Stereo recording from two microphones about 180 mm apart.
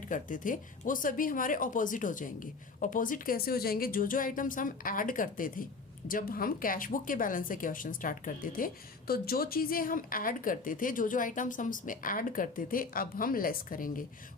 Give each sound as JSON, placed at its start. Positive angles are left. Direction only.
{"t": 0.1, "sound": "a woman's voice", "side_deg": 50}